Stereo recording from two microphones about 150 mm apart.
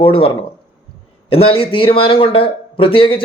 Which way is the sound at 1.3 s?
40° left (ahead or behind).